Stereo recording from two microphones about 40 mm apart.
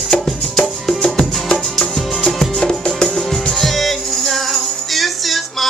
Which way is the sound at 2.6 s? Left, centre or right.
Left.